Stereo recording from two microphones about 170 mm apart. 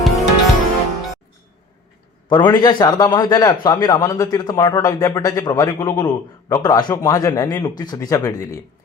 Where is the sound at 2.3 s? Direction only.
25° left (ahead or behind).